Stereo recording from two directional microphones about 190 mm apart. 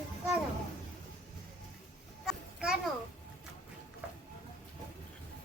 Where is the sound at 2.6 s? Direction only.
5° right (ahead or behind).